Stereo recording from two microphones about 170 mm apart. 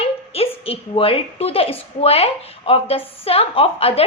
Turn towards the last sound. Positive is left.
turn(degrees=35)  # may be behind; listen again after turning